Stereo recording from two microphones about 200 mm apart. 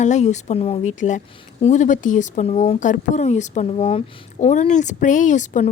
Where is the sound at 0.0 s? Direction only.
35° left (ahead or behind).